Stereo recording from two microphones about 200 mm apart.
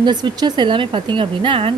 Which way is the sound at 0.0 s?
20° right (ahead or behind).